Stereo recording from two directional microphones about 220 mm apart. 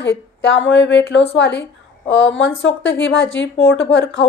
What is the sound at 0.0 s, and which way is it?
A woman's voice, 55° left (ahead or behind).